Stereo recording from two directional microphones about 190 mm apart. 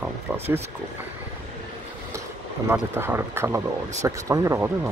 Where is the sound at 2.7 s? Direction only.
10° right (ahead or behind).